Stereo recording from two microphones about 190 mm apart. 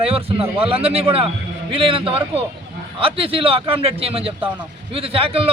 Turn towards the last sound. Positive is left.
turn(degrees=-30)  # may be behind; listen again after turning